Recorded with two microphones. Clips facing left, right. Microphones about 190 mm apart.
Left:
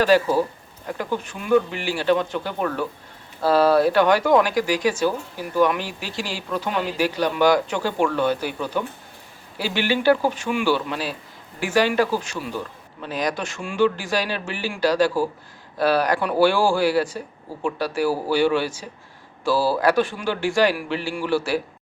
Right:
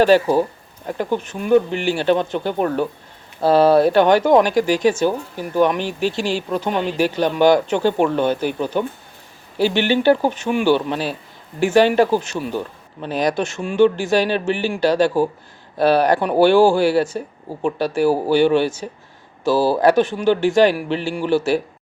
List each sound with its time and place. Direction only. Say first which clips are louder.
0.0 s a man's voice: right 4 dB; 25° right (ahead or behind)